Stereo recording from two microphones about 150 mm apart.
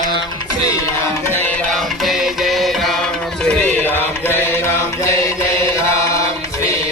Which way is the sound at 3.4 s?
10° left (ahead or behind).